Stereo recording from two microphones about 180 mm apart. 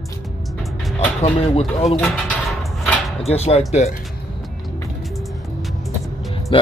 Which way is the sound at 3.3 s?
35° left (ahead or behind).